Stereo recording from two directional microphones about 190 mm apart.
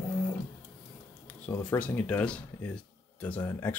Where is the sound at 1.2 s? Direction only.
10° left (ahead or behind).